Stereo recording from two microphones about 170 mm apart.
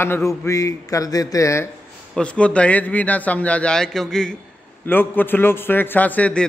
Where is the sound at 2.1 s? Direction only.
5° left (ahead or behind).